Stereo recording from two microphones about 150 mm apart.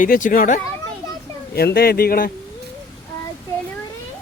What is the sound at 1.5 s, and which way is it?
Speech, 90° left.